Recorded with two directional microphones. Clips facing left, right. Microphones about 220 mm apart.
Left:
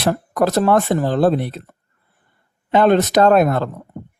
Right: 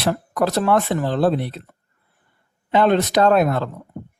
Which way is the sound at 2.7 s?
50° left (ahead or behind).